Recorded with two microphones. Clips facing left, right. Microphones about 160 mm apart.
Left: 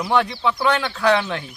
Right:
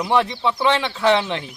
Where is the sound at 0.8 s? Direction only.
25° right (ahead or behind).